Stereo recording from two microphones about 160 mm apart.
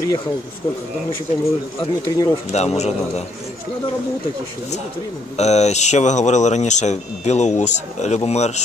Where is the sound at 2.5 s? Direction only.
45° left (ahead or behind).